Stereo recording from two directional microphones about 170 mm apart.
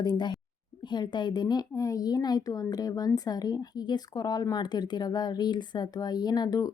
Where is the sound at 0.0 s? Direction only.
25° left (ahead or behind).